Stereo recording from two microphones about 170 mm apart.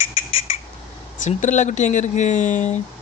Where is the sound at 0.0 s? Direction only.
35° left (ahead or behind).